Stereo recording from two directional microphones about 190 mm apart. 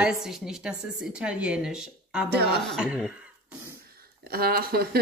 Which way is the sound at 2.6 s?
Centre (ahead or behind).